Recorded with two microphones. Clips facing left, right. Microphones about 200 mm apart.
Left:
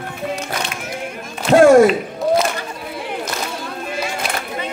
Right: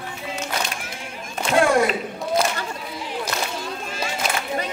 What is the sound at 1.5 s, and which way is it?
Speech, 45° left (ahead or behind).